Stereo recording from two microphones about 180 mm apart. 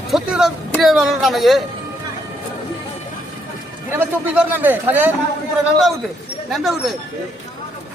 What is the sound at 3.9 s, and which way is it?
Speech, 10° right (ahead or behind).